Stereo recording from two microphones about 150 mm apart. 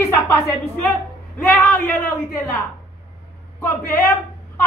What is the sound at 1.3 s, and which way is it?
A man's voice, 10° left (ahead or behind).